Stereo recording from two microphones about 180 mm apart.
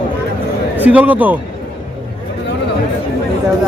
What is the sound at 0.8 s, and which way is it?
Speech, 10° right (ahead or behind).